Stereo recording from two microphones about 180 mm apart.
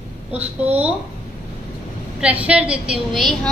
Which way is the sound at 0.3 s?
10° right (ahead or behind).